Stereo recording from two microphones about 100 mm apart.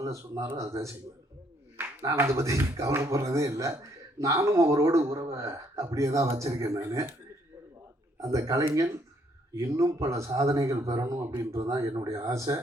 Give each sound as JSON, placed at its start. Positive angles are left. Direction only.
{"t": 0.0, "sound": "speech", "side_deg": -30}
{"t": 8.2, "sound": "speech", "side_deg": -35}